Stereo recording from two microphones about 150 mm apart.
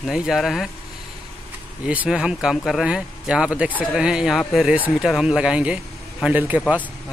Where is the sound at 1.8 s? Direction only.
5° right (ahead or behind).